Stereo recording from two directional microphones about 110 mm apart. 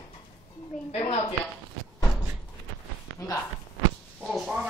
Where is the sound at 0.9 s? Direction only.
60° left (ahead or behind).